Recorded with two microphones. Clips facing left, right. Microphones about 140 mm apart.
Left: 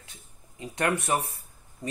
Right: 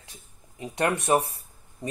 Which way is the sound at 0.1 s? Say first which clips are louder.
Right 2 dB; 25° right (ahead or behind).